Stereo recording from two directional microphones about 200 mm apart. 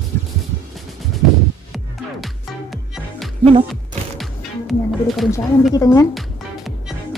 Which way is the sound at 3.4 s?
30° right (ahead or behind).